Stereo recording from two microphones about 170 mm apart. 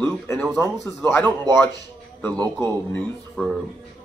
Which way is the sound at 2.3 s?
25° right (ahead or behind).